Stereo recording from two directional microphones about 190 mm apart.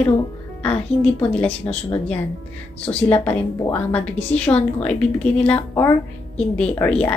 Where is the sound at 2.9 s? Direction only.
10° left (ahead or behind).